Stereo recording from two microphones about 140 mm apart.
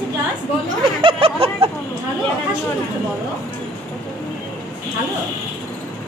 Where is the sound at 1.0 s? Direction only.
40° right (ahead or behind).